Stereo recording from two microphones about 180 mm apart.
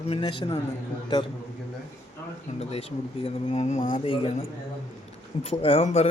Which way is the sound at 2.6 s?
35° left (ahead or behind).